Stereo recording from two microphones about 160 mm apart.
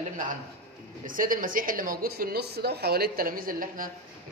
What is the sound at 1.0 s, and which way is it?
A woman's voice, 55° right (ahead or behind).